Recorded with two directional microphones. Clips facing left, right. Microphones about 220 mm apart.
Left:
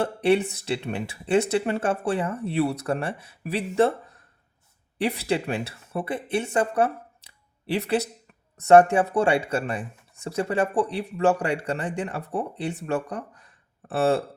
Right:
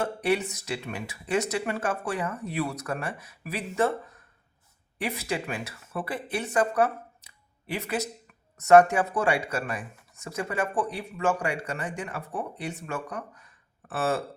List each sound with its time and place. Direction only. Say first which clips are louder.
0.0 s speech: left 5 dB; 30° left (ahead or behind)